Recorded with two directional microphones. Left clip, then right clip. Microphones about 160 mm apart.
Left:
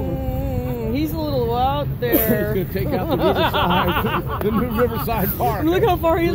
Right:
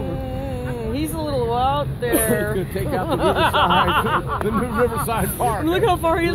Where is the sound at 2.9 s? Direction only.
40° left (ahead or behind).